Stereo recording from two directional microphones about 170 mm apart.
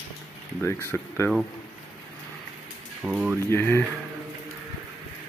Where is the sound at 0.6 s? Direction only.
15° left (ahead or behind).